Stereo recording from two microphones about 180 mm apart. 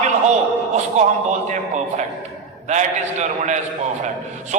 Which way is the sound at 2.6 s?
40° right (ahead or behind).